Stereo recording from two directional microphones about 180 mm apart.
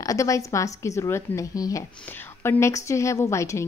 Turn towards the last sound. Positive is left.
turn(degrees=15)  # may be behind; listen again after turning